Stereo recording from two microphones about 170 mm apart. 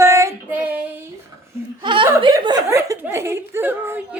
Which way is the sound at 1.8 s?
30° right (ahead or behind).